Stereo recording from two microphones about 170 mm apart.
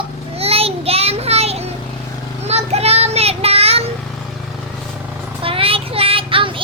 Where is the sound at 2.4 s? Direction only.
40° right (ahead or behind).